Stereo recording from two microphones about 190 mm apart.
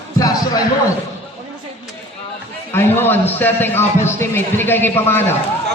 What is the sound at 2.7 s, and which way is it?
A man's voice, 10° left (ahead or behind).